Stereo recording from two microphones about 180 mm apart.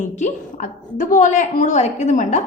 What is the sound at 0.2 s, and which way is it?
A woman's voice, 40° left (ahead or behind).